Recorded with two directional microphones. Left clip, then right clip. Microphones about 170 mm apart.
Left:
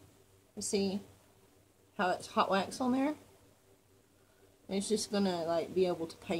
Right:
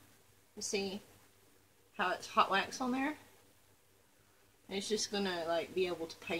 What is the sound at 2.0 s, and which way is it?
Speech, 20° left (ahead or behind).